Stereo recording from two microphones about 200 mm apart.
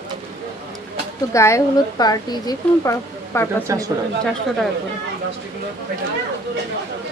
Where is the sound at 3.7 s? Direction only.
15° right (ahead or behind).